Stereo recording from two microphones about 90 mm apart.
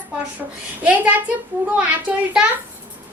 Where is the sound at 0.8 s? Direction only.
15° right (ahead or behind).